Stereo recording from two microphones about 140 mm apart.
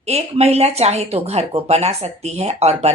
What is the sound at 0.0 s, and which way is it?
A woman's voice, 50° right (ahead or behind).